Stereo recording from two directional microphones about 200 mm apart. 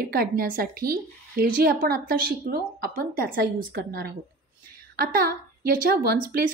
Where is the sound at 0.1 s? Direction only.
45° right (ahead or behind).